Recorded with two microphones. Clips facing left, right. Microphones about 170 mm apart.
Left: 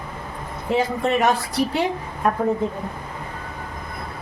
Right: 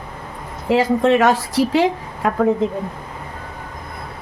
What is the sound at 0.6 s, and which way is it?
A woman's voice, 90° right.